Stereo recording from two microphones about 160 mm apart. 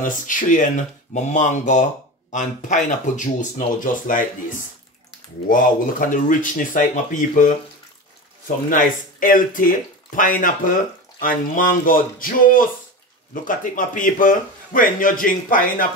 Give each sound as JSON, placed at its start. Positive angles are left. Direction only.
{"t": 0.0, "sound": "a man's voice", "side_deg": 55}
{"t": 8.6, "sound": "a man's voice", "side_deg": 60}